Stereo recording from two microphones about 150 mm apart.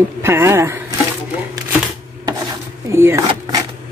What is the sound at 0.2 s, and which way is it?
Speech, 15° right (ahead or behind).